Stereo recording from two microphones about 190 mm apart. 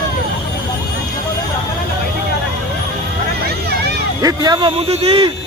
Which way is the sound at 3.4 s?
55° right (ahead or behind).